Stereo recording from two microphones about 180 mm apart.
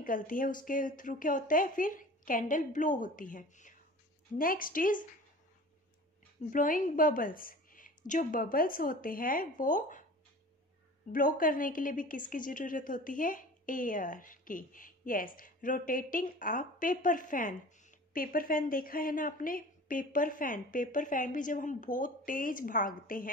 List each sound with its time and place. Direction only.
0.0 s a woman's voice: 50° left (ahead or behind)
6.5 s a woman's voice: 50° left (ahead or behind)
11.1 s a woman's voice: 50° left (ahead or behind)